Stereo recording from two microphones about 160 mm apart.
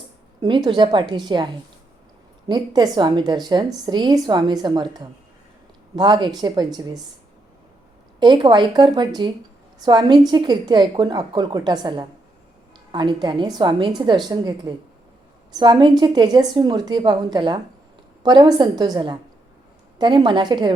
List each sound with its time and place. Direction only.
0.4 s a woman's voice: 30° right (ahead or behind)
2.5 s a woman's voice: 25° right (ahead or behind)
8.2 s a woman's voice: 30° right (ahead or behind)